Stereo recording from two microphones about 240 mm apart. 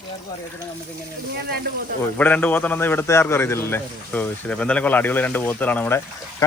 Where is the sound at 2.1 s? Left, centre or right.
Centre.